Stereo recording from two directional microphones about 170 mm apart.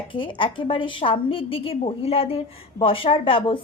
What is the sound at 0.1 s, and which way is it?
Speech, 30° left (ahead or behind).